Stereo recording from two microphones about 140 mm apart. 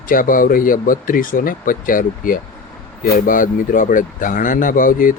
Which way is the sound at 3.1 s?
75° left (ahead or behind).